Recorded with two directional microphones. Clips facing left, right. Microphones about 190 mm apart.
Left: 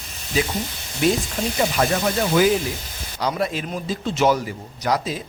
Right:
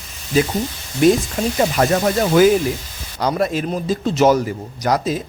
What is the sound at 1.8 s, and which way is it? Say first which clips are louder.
Speech: right 4 dB; 50° right (ahead or behind).